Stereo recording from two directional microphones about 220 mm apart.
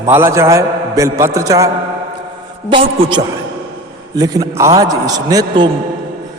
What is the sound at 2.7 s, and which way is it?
A woman's voice, 25° right (ahead or behind).